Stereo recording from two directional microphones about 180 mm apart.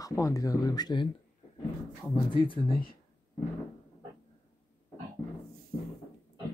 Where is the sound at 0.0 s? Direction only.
15° left (ahead or behind).